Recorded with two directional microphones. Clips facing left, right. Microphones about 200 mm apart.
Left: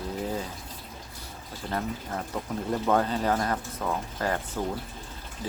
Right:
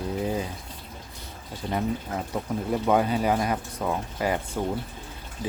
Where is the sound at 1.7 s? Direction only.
10° right (ahead or behind).